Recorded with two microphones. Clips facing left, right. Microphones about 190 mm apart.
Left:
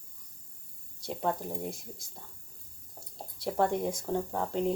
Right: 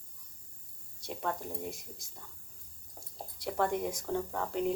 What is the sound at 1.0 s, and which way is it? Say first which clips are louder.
Speech: left 4 dB; 30° left (ahead or behind).